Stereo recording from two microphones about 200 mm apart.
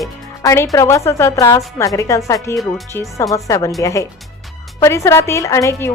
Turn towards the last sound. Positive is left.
turn(degrees=15)  # may be behind; listen again after turning